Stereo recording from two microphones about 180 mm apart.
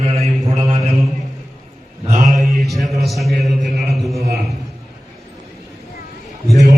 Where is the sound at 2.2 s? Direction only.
Centre (ahead or behind).